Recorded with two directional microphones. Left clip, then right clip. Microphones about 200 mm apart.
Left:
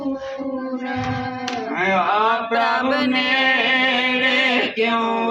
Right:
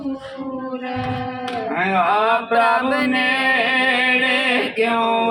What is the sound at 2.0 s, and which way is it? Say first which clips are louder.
Music: right 4 dB; 10° right (ahead or behind).